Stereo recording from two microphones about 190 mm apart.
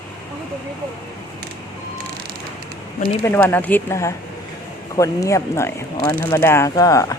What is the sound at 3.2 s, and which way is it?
Speech, 10° left (ahead or behind).